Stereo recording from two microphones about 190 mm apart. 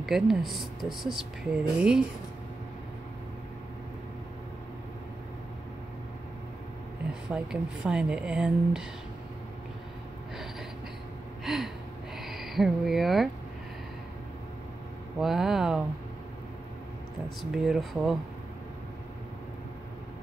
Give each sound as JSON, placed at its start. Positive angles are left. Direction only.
{"t": 0.0, "sound": "speech", "side_deg": 0}
{"t": 7.3, "sound": "speech", "side_deg": -5}
{"t": 11.4, "sound": "gasp", "side_deg": 0}
{"t": 12.2, "sound": "speech", "side_deg": 0}
{"t": 15.1, "sound": "speech", "side_deg": 0}
{"t": 17.4, "sound": "speech", "side_deg": 0}